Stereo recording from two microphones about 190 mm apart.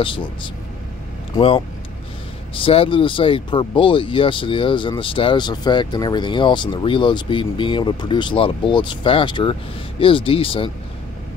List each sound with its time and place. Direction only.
0.0 s speech: 25° left (ahead or behind)
2.5 s speech: 30° left (ahead or behind)